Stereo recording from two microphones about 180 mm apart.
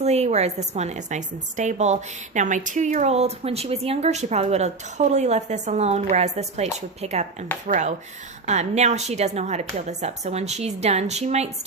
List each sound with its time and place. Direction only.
0.0 s a woman's voice: 35° right (ahead or behind)